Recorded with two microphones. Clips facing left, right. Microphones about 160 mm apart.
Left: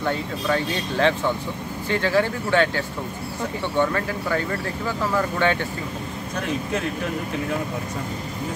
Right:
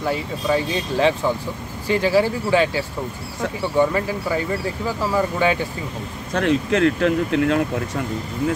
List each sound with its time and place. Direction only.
0.0 s speech: 10° right (ahead or behind)
6.3 s speech: 85° right